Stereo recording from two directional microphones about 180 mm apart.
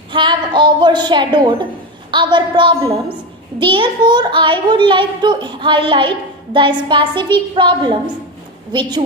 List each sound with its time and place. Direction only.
0.1 s a child's voice: 25° right (ahead or behind)